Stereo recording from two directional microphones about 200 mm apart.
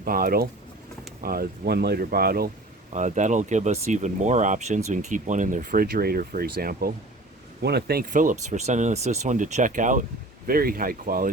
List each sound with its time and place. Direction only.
0.0 s speech: 45° right (ahead or behind)
2.9 s speech: 35° right (ahead or behind)